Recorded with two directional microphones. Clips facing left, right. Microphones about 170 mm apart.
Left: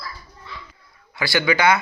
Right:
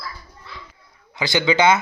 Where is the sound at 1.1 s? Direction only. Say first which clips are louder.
Right 2 dB; 20° right (ahead or behind).